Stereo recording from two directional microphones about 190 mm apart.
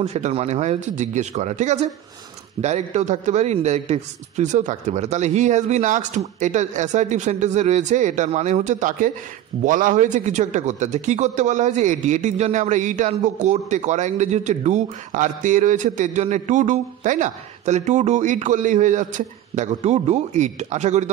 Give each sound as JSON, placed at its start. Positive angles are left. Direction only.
{"t": 0.0, "sound": "speech", "side_deg": -35}